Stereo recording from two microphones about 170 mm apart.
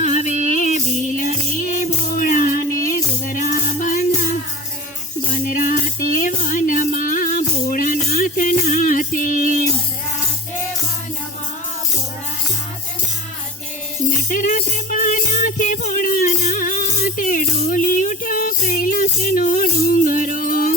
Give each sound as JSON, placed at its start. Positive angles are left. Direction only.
{"t": 0.0, "sound": "music", "side_deg": 45}
{"t": 5.3, "sound": "music", "side_deg": 55}
{"t": 14.3, "sound": "music", "side_deg": 50}